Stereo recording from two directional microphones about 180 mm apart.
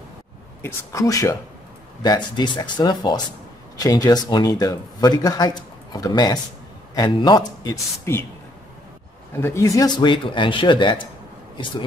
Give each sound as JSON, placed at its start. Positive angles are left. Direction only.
{"t": 0.6, "sound": "a man's voice", "side_deg": 15}
{"t": 9.4, "sound": "a man's voice", "side_deg": 15}